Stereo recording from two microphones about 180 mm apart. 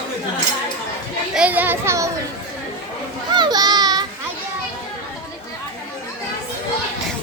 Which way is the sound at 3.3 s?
25° right (ahead or behind).